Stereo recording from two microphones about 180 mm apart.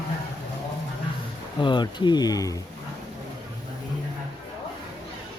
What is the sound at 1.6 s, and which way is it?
Speech, 25° left (ahead or behind).